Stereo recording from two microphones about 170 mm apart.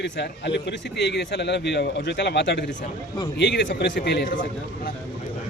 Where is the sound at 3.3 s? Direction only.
90° left.